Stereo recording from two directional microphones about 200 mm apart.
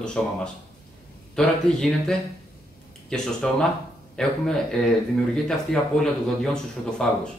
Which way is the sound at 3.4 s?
5° left (ahead or behind).